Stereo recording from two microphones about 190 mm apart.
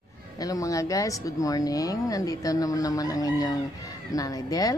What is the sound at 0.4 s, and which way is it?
A woman's voice, 20° left (ahead or behind).